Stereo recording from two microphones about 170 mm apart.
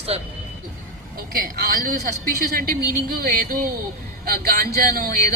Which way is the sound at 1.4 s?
60° right (ahead or behind).